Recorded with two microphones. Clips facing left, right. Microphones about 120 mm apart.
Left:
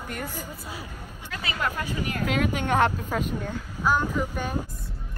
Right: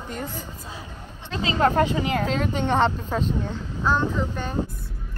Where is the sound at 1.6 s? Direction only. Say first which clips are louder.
Right 11 dB; 40° right (ahead or behind).